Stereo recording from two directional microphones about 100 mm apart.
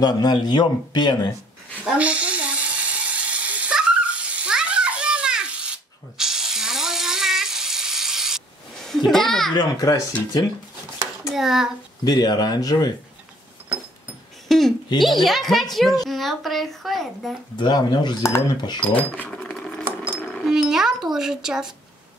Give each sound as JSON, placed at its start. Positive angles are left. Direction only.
{"t": 0.0, "sound": "speech", "side_deg": 45}
{"t": 2.0, "sound": "a sound", "side_deg": -15}
{"t": 9.1, "sound": "speech", "side_deg": 5}
{"t": 9.6, "sound": "speech", "side_deg": 35}
{"t": 11.3, "sound": "speech", "side_deg": -5}
{"t": 12.0, "sound": "speech", "side_deg": 40}
{"t": 14.5, "sound": "a sound", "side_deg": 0}
{"t": 15.0, "sound": "speech", "side_deg": 0}
{"t": 17.6, "sound": "speech", "side_deg": 45}
{"t": 19.0, "sound": "cash register", "side_deg": 15}
{"t": 20.4, "sound": "a sound", "side_deg": -5}